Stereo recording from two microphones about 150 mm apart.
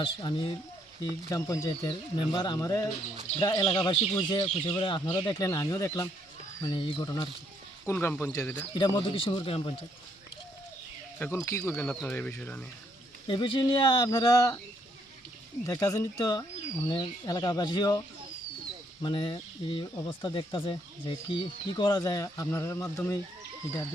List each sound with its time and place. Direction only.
0.0 s speech: 30° left (ahead or behind)
1.3 s speech: 20° left (ahead or behind)
7.9 s speech: 15° left (ahead or behind)
8.7 s speech: 35° left (ahead or behind)
11.2 s speech: 15° left (ahead or behind)
13.2 s speech: 35° left (ahead or behind)
15.6 s speech: 20° left (ahead or behind)
19.0 s speech: 30° left (ahead or behind)